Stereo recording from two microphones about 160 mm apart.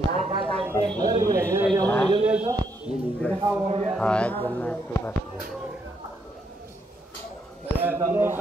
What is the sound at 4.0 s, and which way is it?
Speech, 10° left (ahead or behind).